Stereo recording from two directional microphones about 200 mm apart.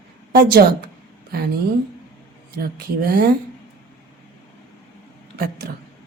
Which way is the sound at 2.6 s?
50° right (ahead or behind).